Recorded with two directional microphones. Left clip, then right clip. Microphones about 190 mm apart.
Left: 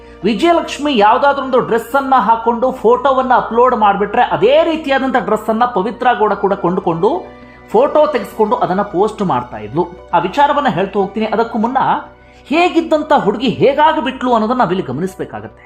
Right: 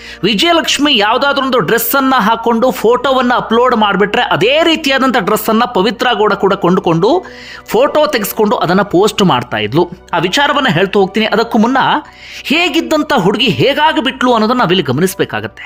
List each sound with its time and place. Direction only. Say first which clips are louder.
0.2 s a woman's voice: right 2 dB; 25° right (ahead or behind)